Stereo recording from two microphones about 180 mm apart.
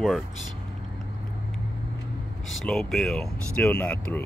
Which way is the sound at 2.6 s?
5° left (ahead or behind).